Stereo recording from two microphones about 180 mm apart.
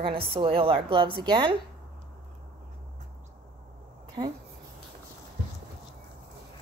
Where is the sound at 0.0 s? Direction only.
30° right (ahead or behind).